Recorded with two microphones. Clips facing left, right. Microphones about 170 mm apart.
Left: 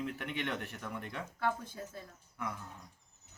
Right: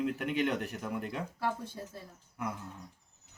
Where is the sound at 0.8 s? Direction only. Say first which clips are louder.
Right 5 dB; 10° right (ahead or behind).